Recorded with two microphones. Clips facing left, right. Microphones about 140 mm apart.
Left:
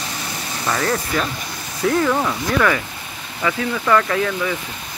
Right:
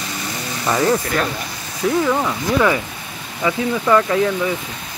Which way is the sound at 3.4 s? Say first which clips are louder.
Right 2 dB; 20° right (ahead or behind).